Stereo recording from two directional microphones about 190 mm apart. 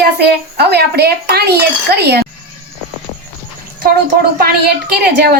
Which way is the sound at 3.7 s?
55° right (ahead or behind).